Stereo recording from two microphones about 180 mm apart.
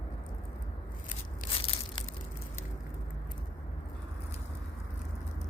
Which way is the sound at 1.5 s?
30° left (ahead or behind).